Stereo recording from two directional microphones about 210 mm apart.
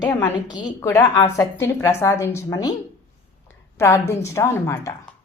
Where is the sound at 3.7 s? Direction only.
15° left (ahead or behind).